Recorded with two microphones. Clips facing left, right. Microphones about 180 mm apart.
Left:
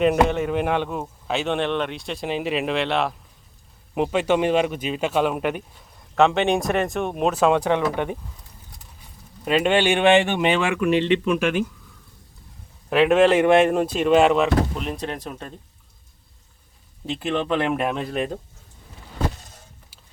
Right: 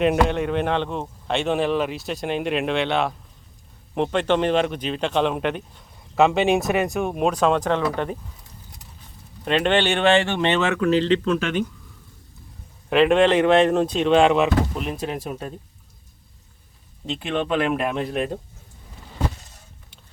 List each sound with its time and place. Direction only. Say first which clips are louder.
0.3 s speech: even; centre (ahead or behind)
12.9 s speech: even; 5° left (ahead or behind)
17.7 s speech: even; centre (ahead or behind)